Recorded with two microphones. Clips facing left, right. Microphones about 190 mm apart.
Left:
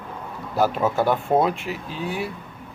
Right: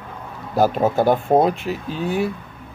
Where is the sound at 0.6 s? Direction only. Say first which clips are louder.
Right 4 dB; 40° right (ahead or behind).